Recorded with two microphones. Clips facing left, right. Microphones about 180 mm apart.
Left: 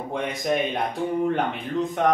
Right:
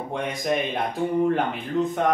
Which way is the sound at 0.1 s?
Centre (ahead or behind).